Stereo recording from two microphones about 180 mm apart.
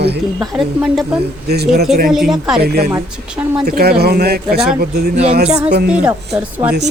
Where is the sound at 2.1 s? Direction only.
Centre (ahead or behind).